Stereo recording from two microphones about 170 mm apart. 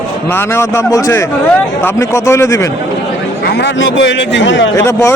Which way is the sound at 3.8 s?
90° left.